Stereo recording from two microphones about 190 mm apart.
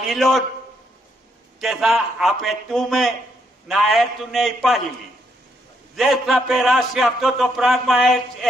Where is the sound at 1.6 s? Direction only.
Centre (ahead or behind).